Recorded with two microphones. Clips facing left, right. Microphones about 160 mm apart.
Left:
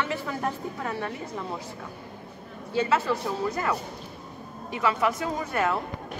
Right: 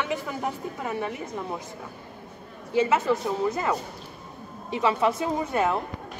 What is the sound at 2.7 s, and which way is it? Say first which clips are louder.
Speech: right 2 dB; 20° right (ahead or behind).